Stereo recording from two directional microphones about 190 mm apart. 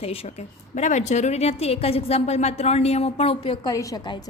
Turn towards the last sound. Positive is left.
turn(degrees=20)  # may be behind; listen again after turning